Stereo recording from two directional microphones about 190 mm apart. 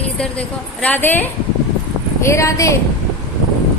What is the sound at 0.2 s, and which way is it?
A woman's voice, 5° left (ahead or behind).